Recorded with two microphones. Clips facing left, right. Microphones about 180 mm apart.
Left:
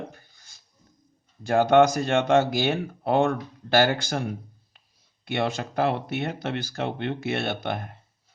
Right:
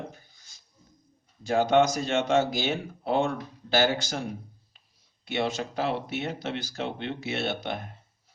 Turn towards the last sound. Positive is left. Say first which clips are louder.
# left 2 dB
turn(degrees=55)  # may be behind; listen again after turning